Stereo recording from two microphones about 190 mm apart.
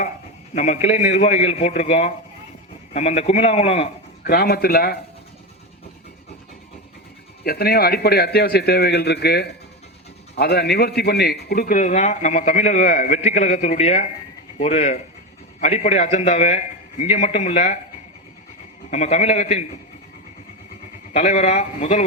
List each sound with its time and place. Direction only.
0.5 s a man's voice: 35° left (ahead or behind)
4.2 s a man's voice: 50° left (ahead or behind)
7.4 s a man's voice: 55° left (ahead or behind); by 17.7 s 40° left (ahead or behind)
18.9 s a man's voice: 35° left (ahead or behind)
21.2 s a man's voice: 35° left (ahead or behind)